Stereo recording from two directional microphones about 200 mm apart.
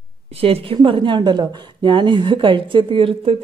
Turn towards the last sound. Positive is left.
turn(degrees=-25)  # may be behind; listen again after turning